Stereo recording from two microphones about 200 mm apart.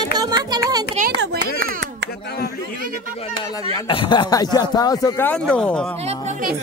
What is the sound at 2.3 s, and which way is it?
Speech, 55° left (ahead or behind).